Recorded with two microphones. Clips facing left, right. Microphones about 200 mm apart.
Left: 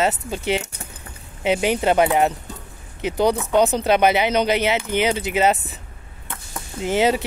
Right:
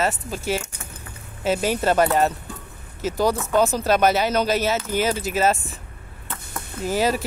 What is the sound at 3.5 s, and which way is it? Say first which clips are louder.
Speech: left 1 dB; 20° left (ahead or behind).